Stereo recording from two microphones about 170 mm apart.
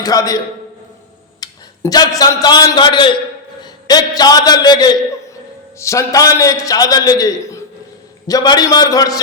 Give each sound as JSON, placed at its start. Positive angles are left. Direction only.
{"t": 0.0, "sound": "a man's voice", "side_deg": 20}
{"t": 1.4, "sound": "a man's voice", "side_deg": 20}